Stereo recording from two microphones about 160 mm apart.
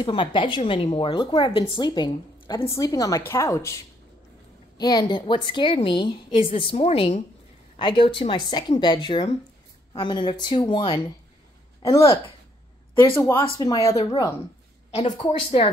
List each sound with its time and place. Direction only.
0.0 s a woman's voice: 30° left (ahead or behind)